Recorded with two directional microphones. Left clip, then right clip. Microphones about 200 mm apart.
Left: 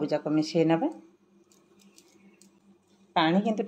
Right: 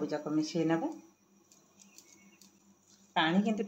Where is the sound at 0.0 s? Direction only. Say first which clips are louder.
Left 6 dB; 40° left (ahead or behind).